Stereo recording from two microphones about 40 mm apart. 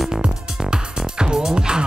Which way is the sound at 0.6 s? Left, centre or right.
Centre.